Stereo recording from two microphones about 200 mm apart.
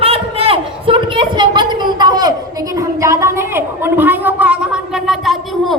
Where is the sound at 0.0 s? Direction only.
30° right (ahead or behind).